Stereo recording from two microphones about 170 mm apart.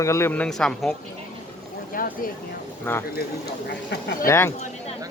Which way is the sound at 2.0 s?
55° left (ahead or behind).